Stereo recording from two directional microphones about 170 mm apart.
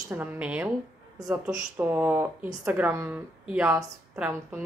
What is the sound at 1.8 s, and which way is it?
Speech, 10° right (ahead or behind).